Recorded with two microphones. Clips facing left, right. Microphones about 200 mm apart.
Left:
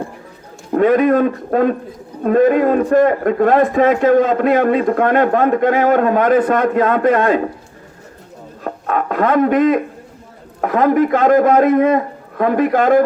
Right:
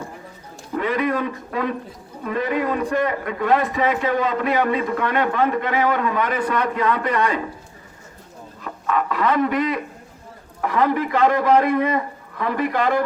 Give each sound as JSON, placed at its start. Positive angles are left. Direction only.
{"t": 0.7, "sound": "a man's voice", "side_deg": 50}
{"t": 8.6, "sound": "a sound", "side_deg": 50}
{"t": 10.6, "sound": "a man's voice", "side_deg": 50}